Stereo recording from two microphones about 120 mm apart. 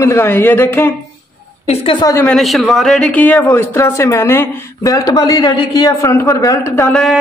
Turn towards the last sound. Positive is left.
turn(degrees=0)  # may be behind; listen again after turning